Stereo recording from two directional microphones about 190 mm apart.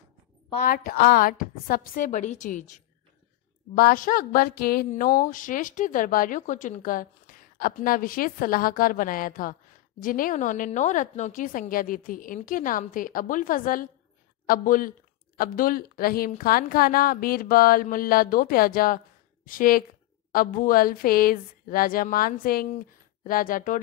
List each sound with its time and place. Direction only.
0.6 s a woman's voice: 50° left (ahead or behind)